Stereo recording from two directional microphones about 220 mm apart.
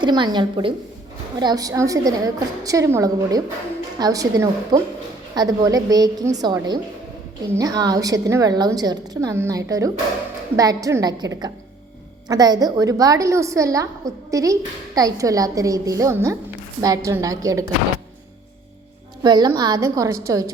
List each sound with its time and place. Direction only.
0.0 s a woman's voice: 20° right (ahead or behind)
19.2 s a woman's voice: 20° right (ahead or behind)